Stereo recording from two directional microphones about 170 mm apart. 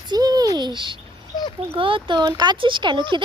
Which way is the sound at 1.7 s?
30° right (ahead or behind).